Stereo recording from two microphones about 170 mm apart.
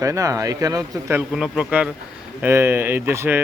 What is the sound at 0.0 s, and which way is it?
Speech, 20° right (ahead or behind).